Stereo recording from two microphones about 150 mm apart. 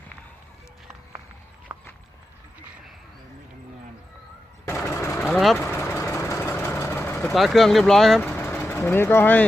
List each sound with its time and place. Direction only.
4.6 s a sound: 15° left (ahead or behind)
5.2 s vehicle: centre (ahead or behind)
5.5 s vehicle: 15° left (ahead or behind)
7.3 s speech: centre (ahead or behind)
8.2 s vehicle: 10° left (ahead or behind)
8.6 s speech: 15° left (ahead or behind)